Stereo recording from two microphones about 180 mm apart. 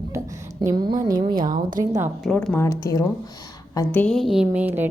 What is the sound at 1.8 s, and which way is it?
Speech, 15° right (ahead or behind).